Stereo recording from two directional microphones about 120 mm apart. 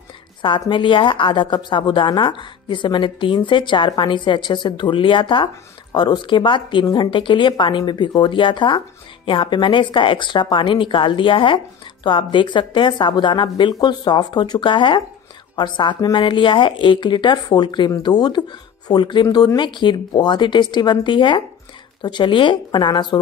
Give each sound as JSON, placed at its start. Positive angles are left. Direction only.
{"t": 0.4, "sound": "speech", "side_deg": 40}